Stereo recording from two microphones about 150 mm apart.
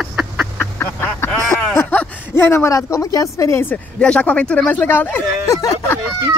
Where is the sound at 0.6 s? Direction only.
15° left (ahead or behind).